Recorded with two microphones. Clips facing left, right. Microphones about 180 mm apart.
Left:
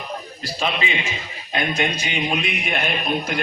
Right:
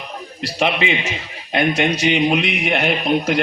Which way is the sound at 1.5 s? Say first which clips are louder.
Right 6 dB; 80° right.